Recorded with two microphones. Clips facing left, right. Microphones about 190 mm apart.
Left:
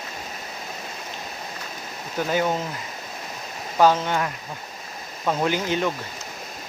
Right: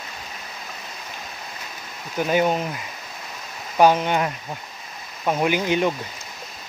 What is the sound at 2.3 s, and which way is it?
Speech, 20° right (ahead or behind).